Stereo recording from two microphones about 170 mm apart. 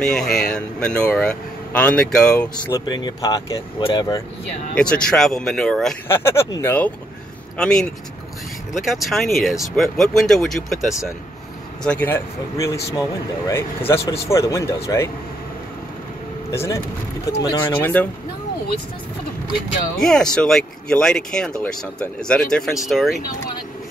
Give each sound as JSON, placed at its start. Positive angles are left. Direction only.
{"t": 0.0, "sound": "speech", "side_deg": 5}
{"t": 2.5, "sound": "speech", "side_deg": 25}
{"t": 4.7, "sound": "speech", "side_deg": 5}
{"t": 6.0, "sound": "speech", "side_deg": 15}
{"t": 16.5, "sound": "speech", "side_deg": 15}
{"t": 20.0, "sound": "speech", "side_deg": 5}